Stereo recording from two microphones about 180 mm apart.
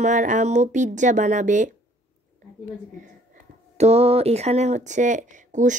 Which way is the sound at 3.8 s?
35° right (ahead or behind).